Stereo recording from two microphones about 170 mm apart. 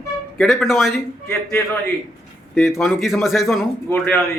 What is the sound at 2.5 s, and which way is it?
Speech, centre (ahead or behind).